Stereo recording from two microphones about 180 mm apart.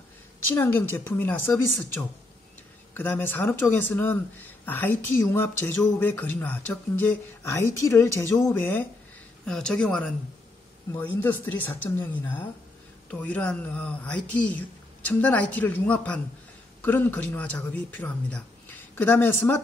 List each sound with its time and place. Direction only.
0.6 s speech: 10° left (ahead or behind)